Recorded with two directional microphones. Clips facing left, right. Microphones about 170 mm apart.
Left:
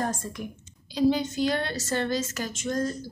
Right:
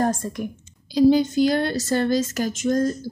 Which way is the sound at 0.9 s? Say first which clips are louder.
Right 7 dB; 40° right (ahead or behind).